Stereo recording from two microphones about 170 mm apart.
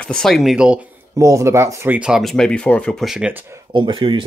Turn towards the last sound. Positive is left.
turn(degrees=-30)  # may be behind; listen again after turning